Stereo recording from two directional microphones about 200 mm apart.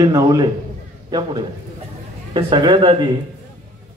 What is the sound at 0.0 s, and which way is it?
Speech, 20° right (ahead or behind).